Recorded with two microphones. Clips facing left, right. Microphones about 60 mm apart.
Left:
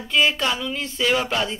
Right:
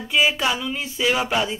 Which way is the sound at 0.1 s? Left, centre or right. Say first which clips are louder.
Even; centre.